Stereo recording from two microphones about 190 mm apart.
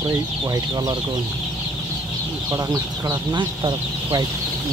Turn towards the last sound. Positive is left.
turn(degrees=-25)  # may be behind; listen again after turning